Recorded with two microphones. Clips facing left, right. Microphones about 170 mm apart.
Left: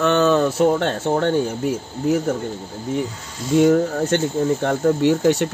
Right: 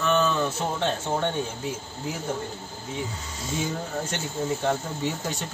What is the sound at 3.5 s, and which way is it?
Speech, 70° left (ahead or behind).